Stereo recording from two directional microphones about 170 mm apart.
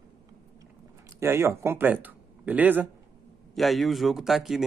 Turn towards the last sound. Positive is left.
turn(degrees=0)  # may be behind; listen again after turning